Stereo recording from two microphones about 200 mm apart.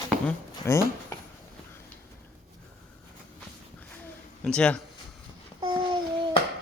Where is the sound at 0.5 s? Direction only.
15° left (ahead or behind).